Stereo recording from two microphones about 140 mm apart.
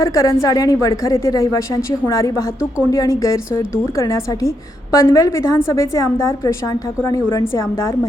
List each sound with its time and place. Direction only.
0.0 s a woman's voice: 20° left (ahead or behind)